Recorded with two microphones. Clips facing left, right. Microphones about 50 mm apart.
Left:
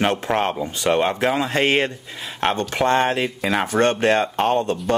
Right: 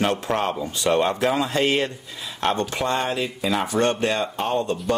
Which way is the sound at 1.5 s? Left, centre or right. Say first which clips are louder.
Left 2 dB; left.